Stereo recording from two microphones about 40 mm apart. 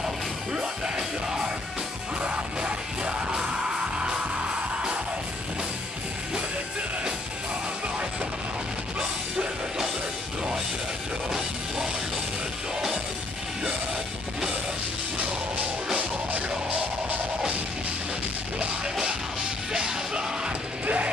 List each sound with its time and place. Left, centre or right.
0.5 s music: centre
11.2 s music: centre
19.7 s music: centre
20.8 s mechanisms: right